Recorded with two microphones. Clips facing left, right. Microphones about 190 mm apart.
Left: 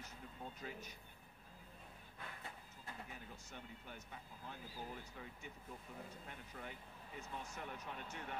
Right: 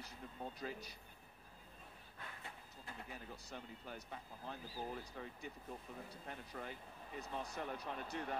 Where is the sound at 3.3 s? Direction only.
35° right (ahead or behind).